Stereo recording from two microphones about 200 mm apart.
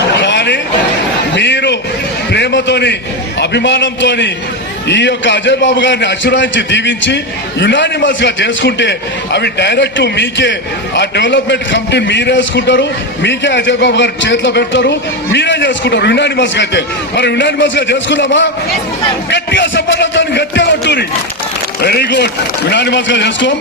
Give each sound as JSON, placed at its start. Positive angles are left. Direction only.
{"t": 0.1, "sound": "chatter", "side_deg": 60}
{"t": 1.4, "sound": "a sound", "side_deg": 60}
{"t": 3.4, "sound": "a man's voice", "side_deg": 60}